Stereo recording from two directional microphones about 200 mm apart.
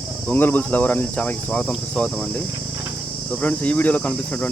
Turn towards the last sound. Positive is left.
turn(degrees=5)  # may be behind; listen again after turning